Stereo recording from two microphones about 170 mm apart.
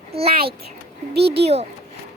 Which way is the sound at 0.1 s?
35° right (ahead or behind).